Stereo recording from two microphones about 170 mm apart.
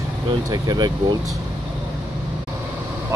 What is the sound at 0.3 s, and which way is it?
Speech, 25° right (ahead or behind).